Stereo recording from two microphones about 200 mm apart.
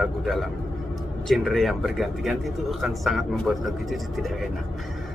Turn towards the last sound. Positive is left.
turn(degrees=0)  # may be behind; listen again after turning